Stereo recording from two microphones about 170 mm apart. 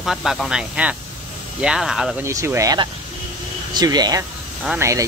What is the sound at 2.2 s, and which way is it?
Speech, 15° right (ahead or behind).